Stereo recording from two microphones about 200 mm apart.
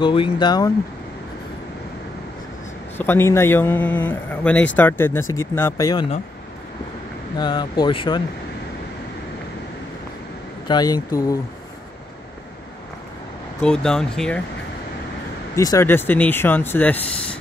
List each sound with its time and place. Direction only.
0.0 s speech: 25° left (ahead or behind)
3.0 s speech: 10° left (ahead or behind)
7.3 s speech: 20° left (ahead or behind)
10.7 s speech: 20° left (ahead or behind)
13.6 s speech: 5° left (ahead or behind)
15.5 s speech: 15° left (ahead or behind)